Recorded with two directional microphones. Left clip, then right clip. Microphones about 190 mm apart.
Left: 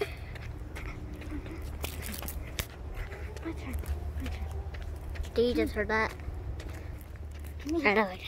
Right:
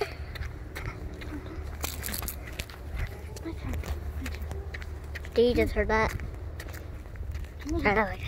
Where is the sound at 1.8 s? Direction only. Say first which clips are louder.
Right 5 dB; 45° right (ahead or behind).